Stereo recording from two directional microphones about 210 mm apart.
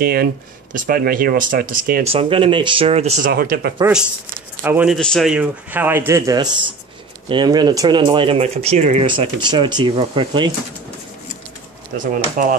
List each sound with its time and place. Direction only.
0.0 s speech: 45° right (ahead or behind)
2.0 s speech: 25° right (ahead or behind)
3.3 s speech: 45° right (ahead or behind)
4.6 s a man's voice: 5° right (ahead or behind); by 10.5 s 25° right (ahead or behind)
12.0 s speech: 40° right (ahead or behind)